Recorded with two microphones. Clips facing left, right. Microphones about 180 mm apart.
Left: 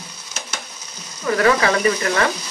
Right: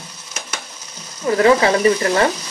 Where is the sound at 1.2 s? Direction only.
25° right (ahead or behind).